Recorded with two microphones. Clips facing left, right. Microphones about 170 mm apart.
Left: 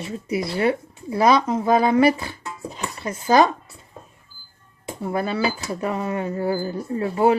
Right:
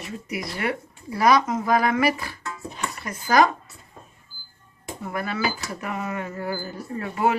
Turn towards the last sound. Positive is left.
turn(degrees=30)  # may be behind; listen again after turning